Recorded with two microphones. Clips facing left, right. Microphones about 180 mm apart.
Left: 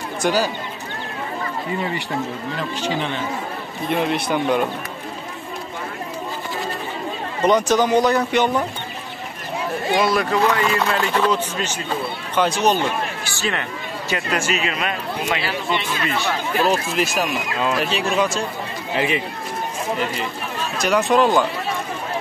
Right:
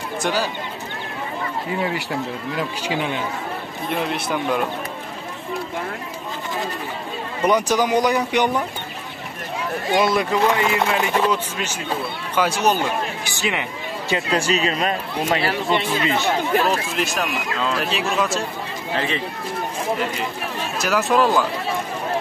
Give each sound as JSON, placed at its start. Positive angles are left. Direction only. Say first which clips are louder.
{"t": 0.2, "sound": "speech", "louder": "left 3 dB", "side_deg": 0}
{"t": 1.7, "sound": "speech", "louder": "right 1 dB", "side_deg": 0}
{"t": 7.4, "sound": "speech", "louder": "left 2 dB", "side_deg": -10}
{"t": 9.9, "sound": "speech", "louder": "right 1 dB", "side_deg": -20}
{"t": 14.0, "sound": "a man's voice", "louder": "right 2 dB", "side_deg": -30}
{"t": 16.9, "sound": "speech", "louder": "left 2 dB", "side_deg": 0}
{"t": 18.9, "sound": "speech", "louder": "left 3 dB", "side_deg": 15}
{"t": 20.7, "sound": "speech", "louder": "left 2 dB", "side_deg": -5}